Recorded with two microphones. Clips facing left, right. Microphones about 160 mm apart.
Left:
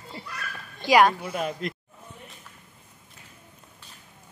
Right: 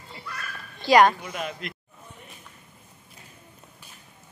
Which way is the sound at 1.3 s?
35° left (ahead or behind).